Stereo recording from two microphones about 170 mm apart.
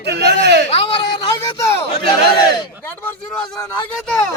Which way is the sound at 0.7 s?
30° left (ahead or behind).